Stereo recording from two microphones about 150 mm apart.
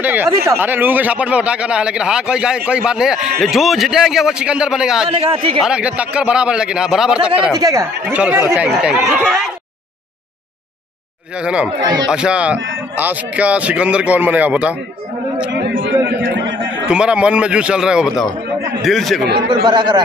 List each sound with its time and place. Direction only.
0.0 s speech: 10° right (ahead or behind)
5.2 s a man's voice: 40° right (ahead or behind)
5.6 s speech: 5° right (ahead or behind)
7.5 s speech: 25° right (ahead or behind)
8.1 s speech: 10° right (ahead or behind)
11.4 s speech: 5° right (ahead or behind)
16.8 s speech: 5° right (ahead or behind)
19.4 s a man's voice: 35° right (ahead or behind)